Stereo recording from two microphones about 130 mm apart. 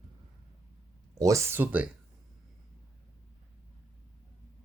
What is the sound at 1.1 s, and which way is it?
Speech, 25° right (ahead or behind).